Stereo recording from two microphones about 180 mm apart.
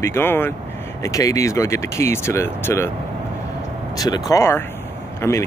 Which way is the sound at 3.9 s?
20° left (ahead or behind).